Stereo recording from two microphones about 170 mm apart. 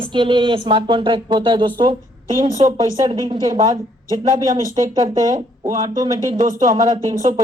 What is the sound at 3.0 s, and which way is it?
Speech, 25° right (ahead or behind).